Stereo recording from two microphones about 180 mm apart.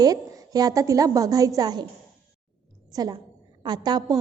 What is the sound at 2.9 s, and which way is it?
A child's voice, 20° right (ahead or behind).